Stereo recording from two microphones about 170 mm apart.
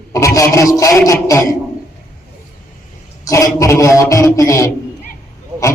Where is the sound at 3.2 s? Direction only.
20° left (ahead or behind).